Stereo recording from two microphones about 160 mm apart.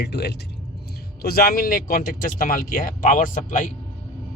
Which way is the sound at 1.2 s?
70° left (ahead or behind).